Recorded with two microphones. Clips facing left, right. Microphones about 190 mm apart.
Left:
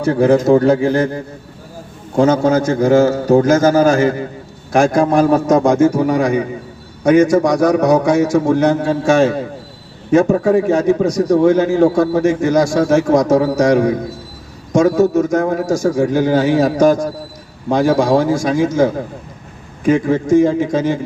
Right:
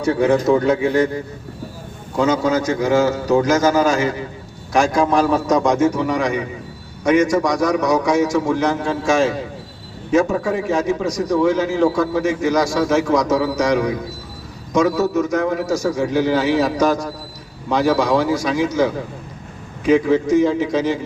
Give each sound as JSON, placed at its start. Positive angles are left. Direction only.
{"t": 0.0, "sound": "a man's voice", "side_deg": 50}
{"t": 0.7, "sound": "speech", "side_deg": 35}
{"t": 2.1, "sound": "a man's voice", "side_deg": 50}